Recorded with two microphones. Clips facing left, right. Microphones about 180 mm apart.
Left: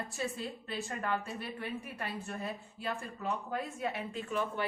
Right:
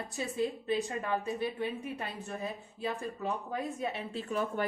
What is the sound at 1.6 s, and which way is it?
Speech, 20° right (ahead or behind).